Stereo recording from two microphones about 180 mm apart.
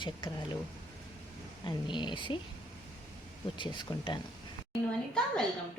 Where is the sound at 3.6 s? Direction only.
25° left (ahead or behind).